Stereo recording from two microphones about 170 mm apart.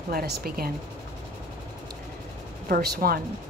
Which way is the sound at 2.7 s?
65° right (ahead or behind).